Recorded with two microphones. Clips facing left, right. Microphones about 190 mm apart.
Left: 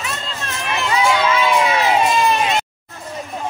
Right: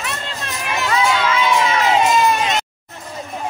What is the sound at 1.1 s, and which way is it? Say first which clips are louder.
Crowd: left 1 dB; 20° left (ahead or behind).